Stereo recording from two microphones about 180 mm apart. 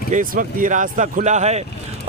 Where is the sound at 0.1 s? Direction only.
50° right (ahead or behind).